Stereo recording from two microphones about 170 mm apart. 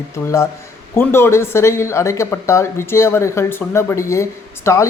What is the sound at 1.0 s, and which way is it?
Speech, 15° left (ahead or behind).